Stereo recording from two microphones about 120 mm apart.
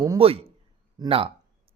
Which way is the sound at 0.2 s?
50° right (ahead or behind).